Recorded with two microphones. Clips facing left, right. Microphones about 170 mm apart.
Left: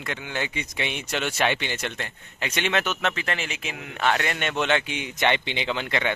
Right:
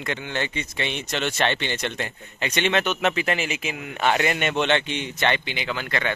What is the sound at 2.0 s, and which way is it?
Speech, 5° right (ahead or behind).